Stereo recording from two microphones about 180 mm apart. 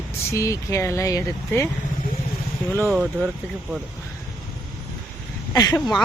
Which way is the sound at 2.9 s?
5° right (ahead or behind).